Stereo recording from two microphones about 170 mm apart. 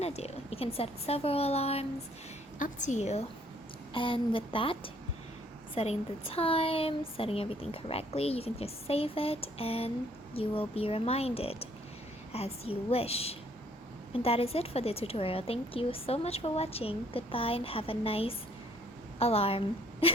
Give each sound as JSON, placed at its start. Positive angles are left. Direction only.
{"t": 0.0, "sound": "a woman's voice", "side_deg": 40}
{"t": 2.6, "sound": "a woman's voice", "side_deg": 50}